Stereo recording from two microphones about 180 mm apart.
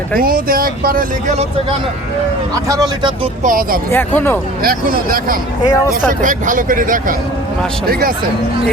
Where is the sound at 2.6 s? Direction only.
20° right (ahead or behind).